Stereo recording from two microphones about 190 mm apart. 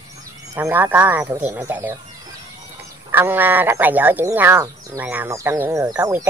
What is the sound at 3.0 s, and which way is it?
Speech, 10° right (ahead or behind).